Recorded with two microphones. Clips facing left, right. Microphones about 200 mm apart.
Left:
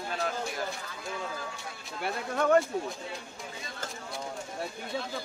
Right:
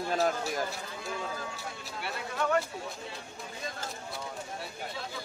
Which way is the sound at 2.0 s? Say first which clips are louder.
Left 5 dB; 50° left (ahead or behind).